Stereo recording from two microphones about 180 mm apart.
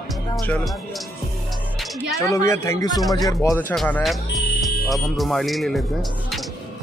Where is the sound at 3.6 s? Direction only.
10° left (ahead or behind).